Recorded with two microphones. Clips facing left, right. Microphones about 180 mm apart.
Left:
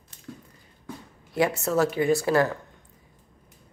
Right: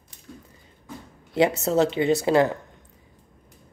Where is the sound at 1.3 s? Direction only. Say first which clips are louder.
Right 3 dB; 20° right (ahead or behind).